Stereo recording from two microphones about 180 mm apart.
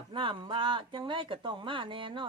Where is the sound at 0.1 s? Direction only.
30° right (ahead or behind).